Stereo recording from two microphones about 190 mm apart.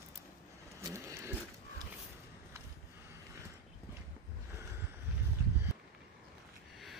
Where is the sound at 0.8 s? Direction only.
15° right (ahead or behind).